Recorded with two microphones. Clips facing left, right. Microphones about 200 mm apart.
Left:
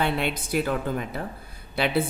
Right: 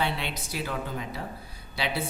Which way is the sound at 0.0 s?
55° left (ahead or behind).